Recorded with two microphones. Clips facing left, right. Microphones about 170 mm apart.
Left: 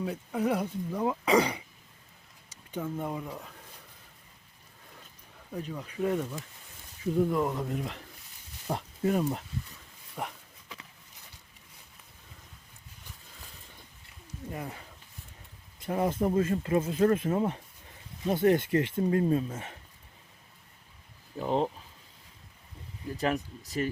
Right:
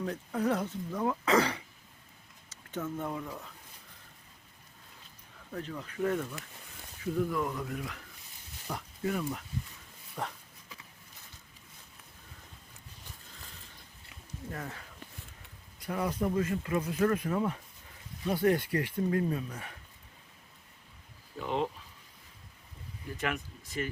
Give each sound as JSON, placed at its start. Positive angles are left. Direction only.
{"t": 0.0, "sound": "speech", "side_deg": 10}
{"t": 5.5, "sound": "speech", "side_deg": 10}
{"t": 10.2, "sound": "speech", "side_deg": 10}
{"t": 14.5, "sound": "speech", "side_deg": 15}
{"t": 15.8, "sound": "speech", "side_deg": 25}
{"t": 21.4, "sound": "speech", "side_deg": 35}
{"t": 23.1, "sound": "speech", "side_deg": 35}